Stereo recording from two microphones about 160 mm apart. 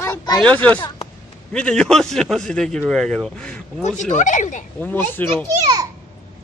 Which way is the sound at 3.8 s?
50° left (ahead or behind).